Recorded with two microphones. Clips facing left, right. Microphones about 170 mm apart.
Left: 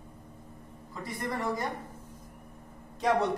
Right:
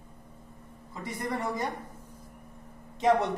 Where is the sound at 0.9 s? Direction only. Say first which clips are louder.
Right 1 dB; 20° right (ahead or behind).